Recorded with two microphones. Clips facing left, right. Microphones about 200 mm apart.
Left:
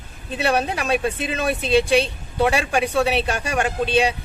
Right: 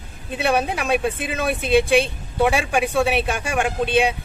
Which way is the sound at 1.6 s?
55° right (ahead or behind).